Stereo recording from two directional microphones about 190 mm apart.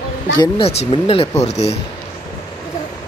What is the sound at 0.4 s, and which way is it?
Speech, 30° left (ahead or behind).